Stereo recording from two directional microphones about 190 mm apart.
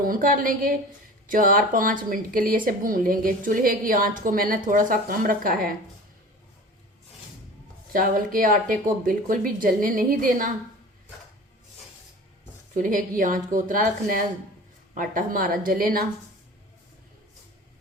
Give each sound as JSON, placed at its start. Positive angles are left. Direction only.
{"t": 0.0, "sound": "a woman's voice", "side_deg": -45}
{"t": 7.9, "sound": "a woman's voice", "side_deg": -45}
{"t": 12.7, "sound": "a woman's voice", "side_deg": -45}